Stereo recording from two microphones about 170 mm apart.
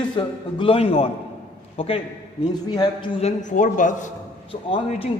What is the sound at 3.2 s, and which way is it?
Speech, 45° left (ahead or behind).